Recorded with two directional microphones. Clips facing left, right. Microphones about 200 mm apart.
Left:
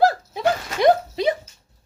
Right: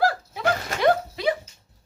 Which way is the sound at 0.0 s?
20° left (ahead or behind).